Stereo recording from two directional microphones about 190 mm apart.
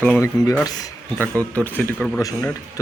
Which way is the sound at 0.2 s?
15° left (ahead or behind).